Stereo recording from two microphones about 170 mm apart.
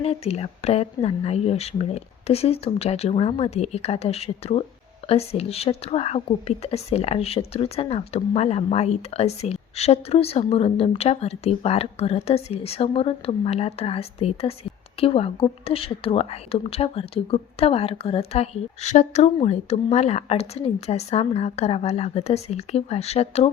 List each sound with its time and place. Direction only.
0.0 s speech: 35° left (ahead or behind)